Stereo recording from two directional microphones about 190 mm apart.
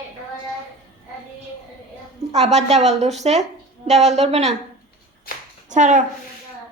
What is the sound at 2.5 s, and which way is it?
A woman's voice, 35° right (ahead or behind).